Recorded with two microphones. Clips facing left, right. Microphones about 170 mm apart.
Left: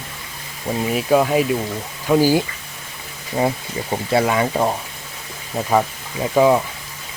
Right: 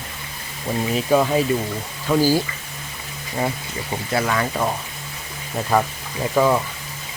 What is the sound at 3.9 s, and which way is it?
Speech, 25° left (ahead or behind).